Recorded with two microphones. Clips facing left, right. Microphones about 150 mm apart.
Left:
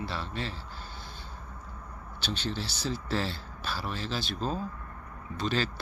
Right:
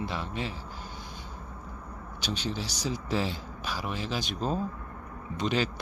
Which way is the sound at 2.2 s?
10° right (ahead or behind).